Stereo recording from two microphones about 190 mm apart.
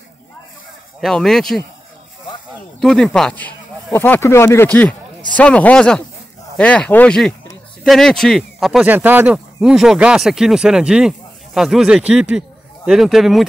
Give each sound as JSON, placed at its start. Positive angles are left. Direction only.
{"t": 1.0, "sound": "speech", "side_deg": 0}
{"t": 2.8, "sound": "speech", "side_deg": 0}